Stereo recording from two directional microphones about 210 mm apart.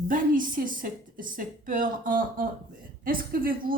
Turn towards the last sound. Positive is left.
turn(degrees=-45)  # may be behind; listen again after turning